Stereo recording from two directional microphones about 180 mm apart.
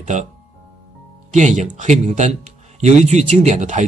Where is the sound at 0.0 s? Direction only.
40° right (ahead or behind).